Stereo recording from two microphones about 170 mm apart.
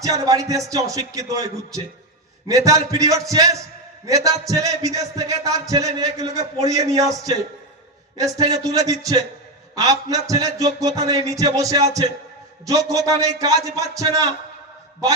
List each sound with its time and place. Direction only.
0.0 s a man's voice: 20° right (ahead or behind)